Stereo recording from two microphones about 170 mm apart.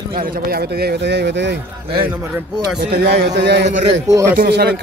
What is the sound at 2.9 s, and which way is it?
Speech, 70° right (ahead or behind).